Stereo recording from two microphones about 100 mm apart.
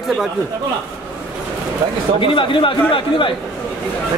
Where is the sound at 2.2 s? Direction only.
60° left (ahead or behind).